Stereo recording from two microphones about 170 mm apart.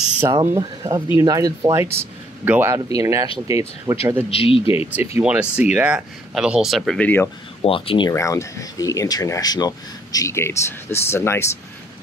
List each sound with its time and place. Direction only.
0.2 s speech: 20° right (ahead or behind)
4.3 s speech: 35° left (ahead or behind)
4.6 s speech: 10° right (ahead or behind); by 7.2 s 10° left (ahead or behind)
7.6 s speech: 30° left (ahead or behind)
8.1 s speech: 15° left (ahead or behind)